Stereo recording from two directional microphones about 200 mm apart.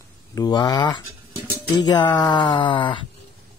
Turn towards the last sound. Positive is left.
turn(degrees=25)  # may be behind; listen again after turning